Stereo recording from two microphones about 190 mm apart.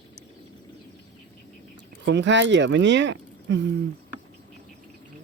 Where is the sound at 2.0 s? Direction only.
70° right (ahead or behind).